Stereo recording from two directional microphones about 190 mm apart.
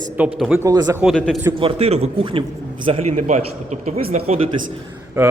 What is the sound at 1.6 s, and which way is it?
A man's voice, 30° right (ahead or behind).